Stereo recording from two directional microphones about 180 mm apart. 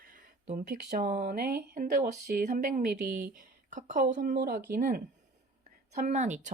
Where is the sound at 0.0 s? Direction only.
50° right (ahead or behind).